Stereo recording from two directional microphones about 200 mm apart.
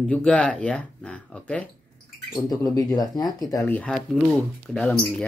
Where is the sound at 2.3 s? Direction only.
20° left (ahead or behind).